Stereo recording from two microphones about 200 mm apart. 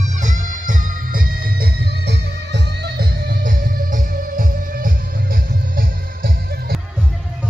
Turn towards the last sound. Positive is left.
turn(degrees=-50)  # may be behind; listen again after turning